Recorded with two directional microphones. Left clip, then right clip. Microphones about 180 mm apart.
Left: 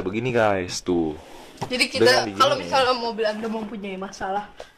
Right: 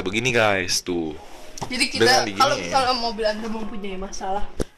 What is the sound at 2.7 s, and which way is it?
Speech, 15° left (ahead or behind).